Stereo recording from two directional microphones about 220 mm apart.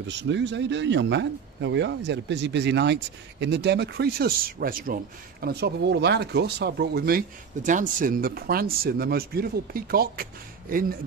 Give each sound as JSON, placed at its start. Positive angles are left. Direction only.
{"t": 0.2, "sound": "speech", "side_deg": -55}